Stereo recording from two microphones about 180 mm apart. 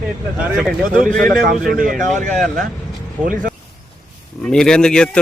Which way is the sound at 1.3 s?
50° right (ahead or behind).